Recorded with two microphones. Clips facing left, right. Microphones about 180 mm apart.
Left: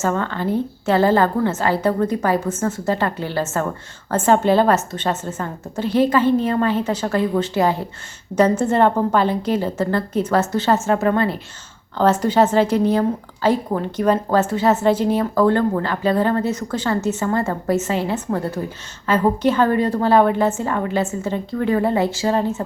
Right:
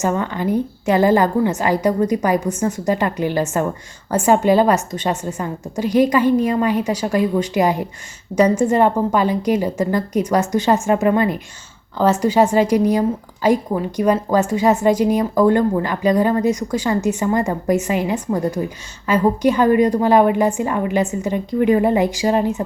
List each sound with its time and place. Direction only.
0.0 s speech: 15° right (ahead or behind)